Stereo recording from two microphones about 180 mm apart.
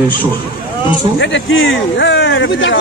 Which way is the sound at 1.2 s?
90° left.